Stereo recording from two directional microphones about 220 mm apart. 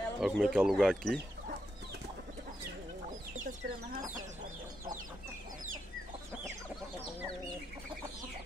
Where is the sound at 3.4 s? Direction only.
35° right (ahead or behind).